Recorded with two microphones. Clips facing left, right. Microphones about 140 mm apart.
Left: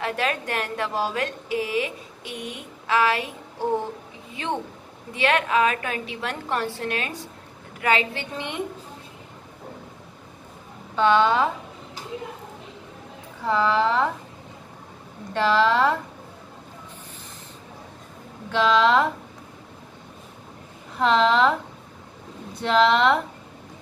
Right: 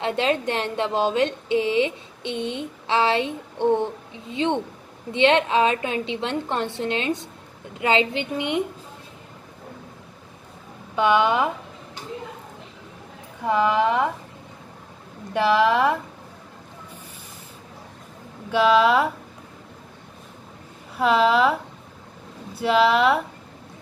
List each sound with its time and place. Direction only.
0.0 s a woman's voice: 25° right (ahead or behind)
11.0 s speech: 10° right (ahead or behind)
13.5 s speech: 15° right (ahead or behind)
15.3 s speech: 10° right (ahead or behind)
18.5 s speech: 10° right (ahead or behind)
21.0 s speech: 10° right (ahead or behind)